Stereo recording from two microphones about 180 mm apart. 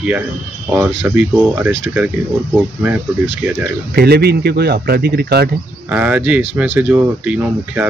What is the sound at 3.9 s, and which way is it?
Speech, 65° right (ahead or behind).